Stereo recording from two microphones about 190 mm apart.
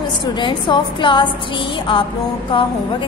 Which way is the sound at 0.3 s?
25° left (ahead or behind).